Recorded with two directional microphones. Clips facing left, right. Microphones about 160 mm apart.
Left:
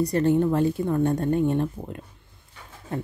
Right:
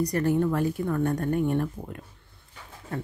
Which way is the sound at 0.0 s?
25° left (ahead or behind).